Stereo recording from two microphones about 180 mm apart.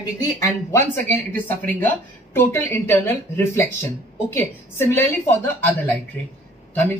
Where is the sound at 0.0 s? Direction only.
20° left (ahead or behind).